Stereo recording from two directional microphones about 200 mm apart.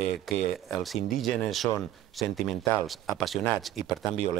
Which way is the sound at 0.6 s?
Centre (ahead or behind).